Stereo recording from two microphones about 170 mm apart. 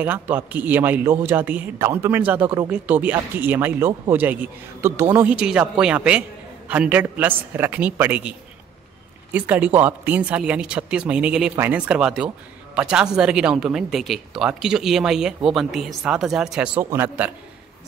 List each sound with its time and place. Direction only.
0.0 s a man's voice: 10° right (ahead or behind)